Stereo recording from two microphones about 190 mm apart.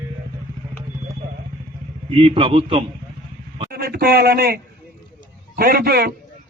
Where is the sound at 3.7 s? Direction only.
55° right (ahead or behind).